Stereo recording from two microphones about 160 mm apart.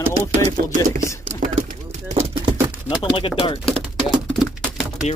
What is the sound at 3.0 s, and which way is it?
Speech, 30° left (ahead or behind).